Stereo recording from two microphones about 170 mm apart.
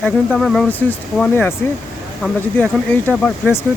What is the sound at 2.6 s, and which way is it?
Speech, 10° left (ahead or behind).